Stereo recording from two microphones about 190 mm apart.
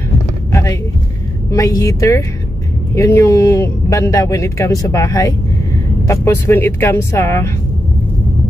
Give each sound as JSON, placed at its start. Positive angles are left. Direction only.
{"t": 0.5, "sound": "vehicle", "side_deg": 15}
{"t": 1.5, "sound": "speech", "side_deg": 15}